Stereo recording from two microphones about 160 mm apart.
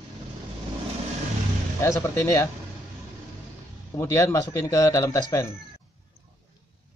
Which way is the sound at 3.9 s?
15° left (ahead or behind).